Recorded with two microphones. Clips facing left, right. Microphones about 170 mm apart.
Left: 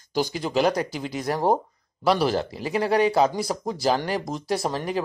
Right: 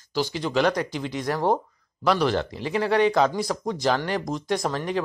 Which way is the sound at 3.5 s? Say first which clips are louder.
Even; 30° left (ahead or behind).